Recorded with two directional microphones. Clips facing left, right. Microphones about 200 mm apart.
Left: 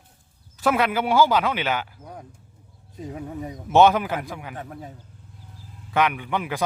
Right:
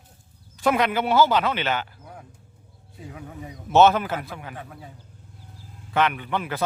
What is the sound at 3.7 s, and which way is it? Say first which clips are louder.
Speech: even; 15° left (ahead or behind).